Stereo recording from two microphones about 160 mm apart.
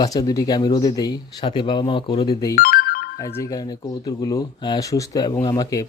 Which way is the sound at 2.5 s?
65° left (ahead or behind).